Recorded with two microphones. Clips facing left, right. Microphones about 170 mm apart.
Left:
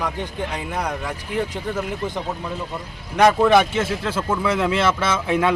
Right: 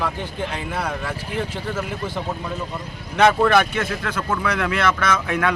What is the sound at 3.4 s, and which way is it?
Speech, 20° left (ahead or behind).